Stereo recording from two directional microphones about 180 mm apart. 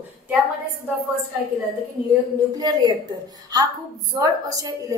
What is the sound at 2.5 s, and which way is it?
Speech, 20° right (ahead or behind).